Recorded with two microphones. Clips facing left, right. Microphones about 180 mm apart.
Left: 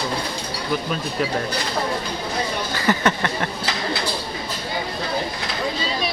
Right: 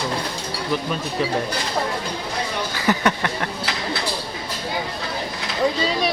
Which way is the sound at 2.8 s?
Centre (ahead or behind).